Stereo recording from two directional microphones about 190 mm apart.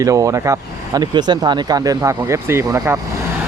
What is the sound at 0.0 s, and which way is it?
Speech, 15° right (ahead or behind).